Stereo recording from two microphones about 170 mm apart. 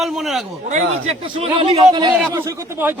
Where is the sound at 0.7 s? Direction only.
40° right (ahead or behind).